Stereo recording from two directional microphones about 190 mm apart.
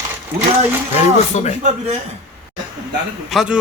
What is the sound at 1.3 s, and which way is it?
Speech, 40° left (ahead or behind).